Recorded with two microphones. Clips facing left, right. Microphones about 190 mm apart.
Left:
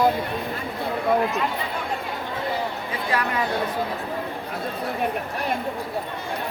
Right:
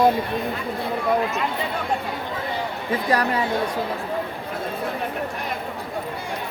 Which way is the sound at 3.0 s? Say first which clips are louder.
Right 3 dB; 40° right (ahead or behind).